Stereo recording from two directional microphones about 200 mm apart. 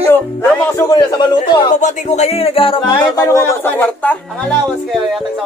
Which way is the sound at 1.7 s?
35° left (ahead or behind).